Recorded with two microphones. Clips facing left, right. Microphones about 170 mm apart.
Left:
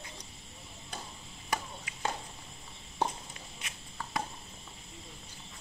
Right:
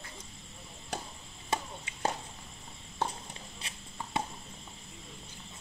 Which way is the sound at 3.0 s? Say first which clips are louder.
Left 2 dB; 15° left (ahead or behind).